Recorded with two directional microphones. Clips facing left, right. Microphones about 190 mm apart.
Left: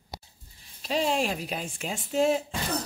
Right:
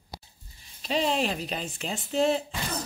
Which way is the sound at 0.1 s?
20° left (ahead or behind).